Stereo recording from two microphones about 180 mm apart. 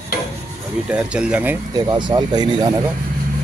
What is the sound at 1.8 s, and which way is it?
Speech, 25° right (ahead or behind).